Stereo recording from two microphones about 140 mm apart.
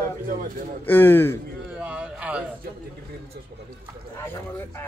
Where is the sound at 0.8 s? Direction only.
15° left (ahead or behind).